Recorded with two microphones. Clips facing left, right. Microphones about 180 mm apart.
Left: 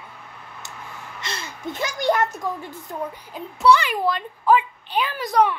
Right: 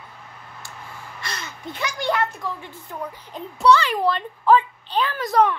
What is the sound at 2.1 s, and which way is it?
Speech, 40° left (ahead or behind).